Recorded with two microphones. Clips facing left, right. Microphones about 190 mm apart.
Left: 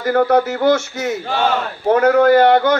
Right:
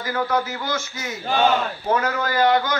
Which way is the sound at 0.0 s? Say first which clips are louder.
Left 9 dB; 60° left (ahead or behind).